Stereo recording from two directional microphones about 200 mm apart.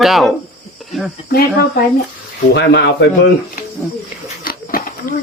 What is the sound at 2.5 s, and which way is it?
Speech, 60° left (ahead or behind).